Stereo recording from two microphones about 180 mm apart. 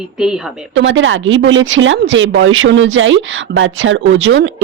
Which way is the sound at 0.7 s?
90° right.